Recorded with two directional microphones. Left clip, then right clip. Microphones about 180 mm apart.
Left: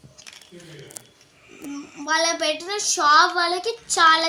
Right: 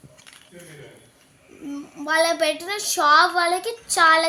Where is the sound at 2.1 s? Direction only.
50° right (ahead or behind).